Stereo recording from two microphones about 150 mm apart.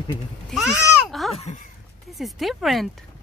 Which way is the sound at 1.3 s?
50° left (ahead or behind).